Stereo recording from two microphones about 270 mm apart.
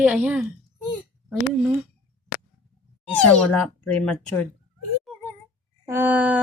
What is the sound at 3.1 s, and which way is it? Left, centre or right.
Speech, centre.